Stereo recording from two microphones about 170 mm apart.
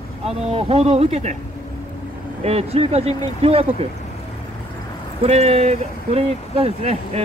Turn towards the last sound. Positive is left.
turn(degrees=-40)  # may be behind; listen again after turning